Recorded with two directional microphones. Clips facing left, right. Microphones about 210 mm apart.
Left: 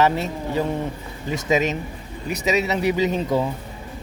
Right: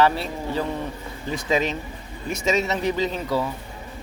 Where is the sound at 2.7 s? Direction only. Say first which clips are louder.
Left 3 dB; 15° left (ahead or behind).